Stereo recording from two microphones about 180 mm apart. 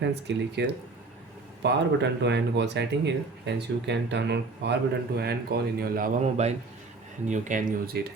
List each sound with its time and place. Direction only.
0.0 s speech: 75° right (ahead or behind)
6.3 s a man's voice: 35° right (ahead or behind)